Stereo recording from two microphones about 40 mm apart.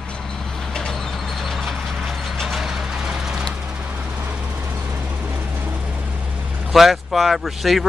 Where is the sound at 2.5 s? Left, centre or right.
Centre.